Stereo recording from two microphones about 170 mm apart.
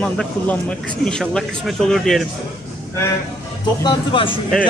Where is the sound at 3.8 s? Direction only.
30° left (ahead or behind).